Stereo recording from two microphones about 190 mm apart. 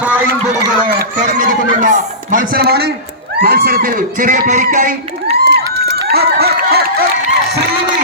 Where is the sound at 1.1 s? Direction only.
45° right (ahead or behind).